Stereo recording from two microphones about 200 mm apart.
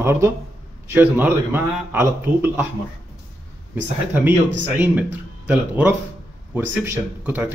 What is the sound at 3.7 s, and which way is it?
A man's voice, 10° right (ahead or behind).